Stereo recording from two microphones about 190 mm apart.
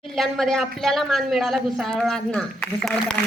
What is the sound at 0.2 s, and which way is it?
A woman's voice, centre (ahead or behind).